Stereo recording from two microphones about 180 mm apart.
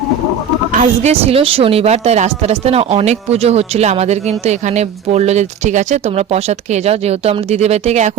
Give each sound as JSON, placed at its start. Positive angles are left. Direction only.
{"t": 0.7, "sound": "a woman's voice", "side_deg": -40}